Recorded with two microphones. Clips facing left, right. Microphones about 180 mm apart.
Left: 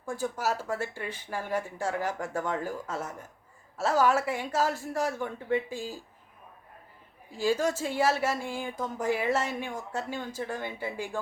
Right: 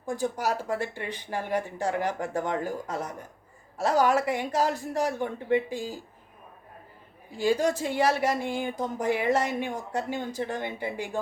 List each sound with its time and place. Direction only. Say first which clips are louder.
0.0 s speech: right 2 dB; 20° right (ahead or behind)
7.4 s speech: right 2 dB; 15° right (ahead or behind)